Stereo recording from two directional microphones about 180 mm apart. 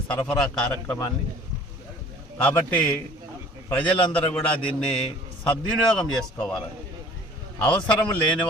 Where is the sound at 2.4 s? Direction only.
10° left (ahead or behind).